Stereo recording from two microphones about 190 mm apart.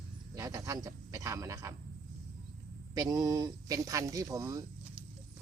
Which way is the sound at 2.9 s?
20° right (ahead or behind).